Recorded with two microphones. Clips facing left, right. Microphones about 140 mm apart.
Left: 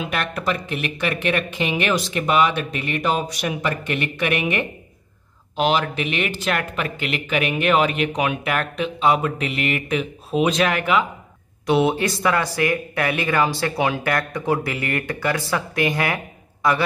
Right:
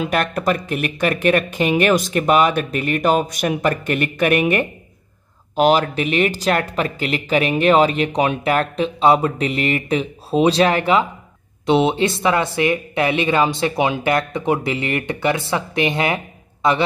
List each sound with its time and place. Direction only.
0.0 s speech: 40° right (ahead or behind); by 16.8 s 25° right (ahead or behind)